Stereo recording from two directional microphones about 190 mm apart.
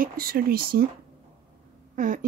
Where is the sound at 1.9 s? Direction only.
45° right (ahead or behind).